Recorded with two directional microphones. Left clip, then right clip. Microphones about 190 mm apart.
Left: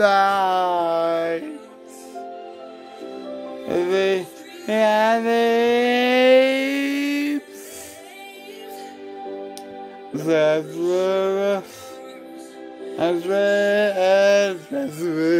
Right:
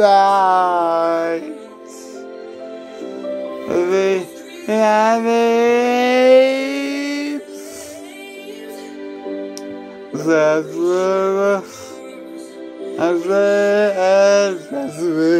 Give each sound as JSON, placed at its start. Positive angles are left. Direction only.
{"t": 0.0, "sound": "music", "side_deg": 15}
{"t": 3.6, "sound": "music", "side_deg": 15}
{"t": 10.1, "sound": "music", "side_deg": 15}
{"t": 12.9, "sound": "music", "side_deg": 15}